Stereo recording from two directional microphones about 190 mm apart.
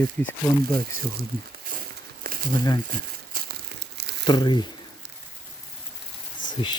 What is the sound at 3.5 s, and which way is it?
Crumpling, 60° right (ahead or behind).